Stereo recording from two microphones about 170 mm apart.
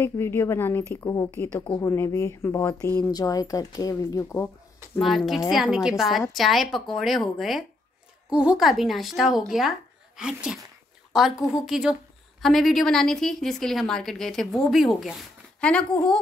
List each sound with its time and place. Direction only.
0.0 s speech: 15° left (ahead or behind)
5.0 s a woman's voice: centre (ahead or behind)